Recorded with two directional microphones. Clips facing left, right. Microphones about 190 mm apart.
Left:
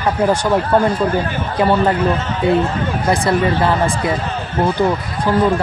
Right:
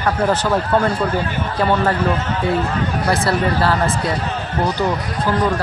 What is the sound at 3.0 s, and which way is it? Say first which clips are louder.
Speech: left 4 dB; 15° left (ahead or behind).